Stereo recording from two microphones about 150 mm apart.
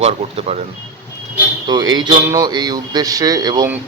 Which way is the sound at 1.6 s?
30° right (ahead or behind).